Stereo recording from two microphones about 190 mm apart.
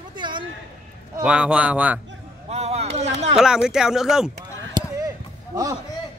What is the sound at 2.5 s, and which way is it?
Speech, 35° right (ahead or behind).